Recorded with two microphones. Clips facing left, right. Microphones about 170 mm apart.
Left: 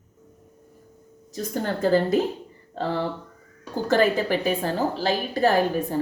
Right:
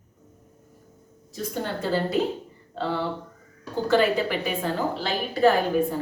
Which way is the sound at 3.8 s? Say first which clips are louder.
Left 1 dB; 40° left (ahead or behind).